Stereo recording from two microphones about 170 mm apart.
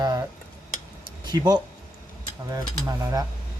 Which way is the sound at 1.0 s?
25° right (ahead or behind).